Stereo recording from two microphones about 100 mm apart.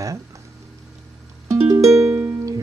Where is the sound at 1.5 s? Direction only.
30° right (ahead or behind).